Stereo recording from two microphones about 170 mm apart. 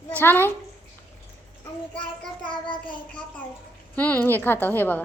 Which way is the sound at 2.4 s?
30° left (ahead or behind).